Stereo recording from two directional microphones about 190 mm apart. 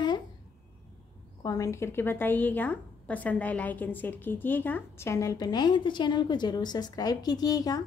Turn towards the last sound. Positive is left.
turn(degrees=20)  # may be behind; listen again after turning